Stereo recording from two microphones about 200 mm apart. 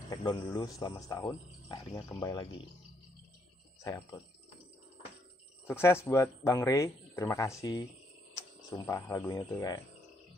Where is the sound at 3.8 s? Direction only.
20° left (ahead or behind).